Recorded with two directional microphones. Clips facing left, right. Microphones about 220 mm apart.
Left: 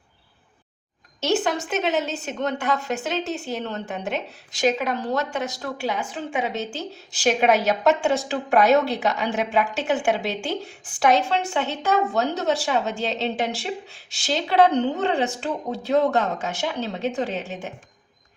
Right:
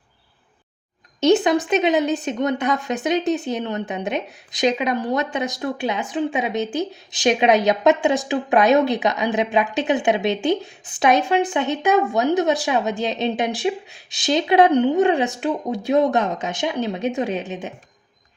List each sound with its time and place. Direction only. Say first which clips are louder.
1.2 s speech: right 7 dB; 15° right (ahead or behind)